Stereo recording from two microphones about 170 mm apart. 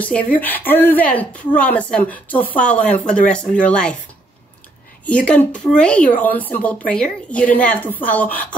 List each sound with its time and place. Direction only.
0.0 s speech: 10° left (ahead or behind)
5.0 s speech: 5° left (ahead or behind)